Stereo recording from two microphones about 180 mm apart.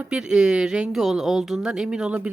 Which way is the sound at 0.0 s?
5° right (ahead or behind).